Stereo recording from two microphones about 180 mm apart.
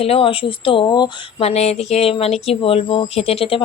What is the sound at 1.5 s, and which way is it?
A woman's voice, 35° left (ahead or behind).